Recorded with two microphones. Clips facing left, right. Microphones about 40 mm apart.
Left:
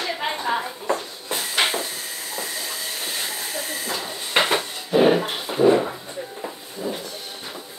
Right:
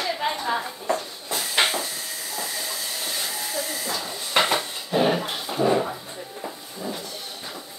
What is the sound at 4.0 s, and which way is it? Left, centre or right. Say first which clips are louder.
Dishes: left 1 dB; centre.